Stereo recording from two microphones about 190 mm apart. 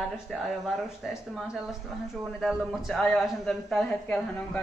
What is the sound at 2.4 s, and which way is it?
Speech, centre (ahead or behind).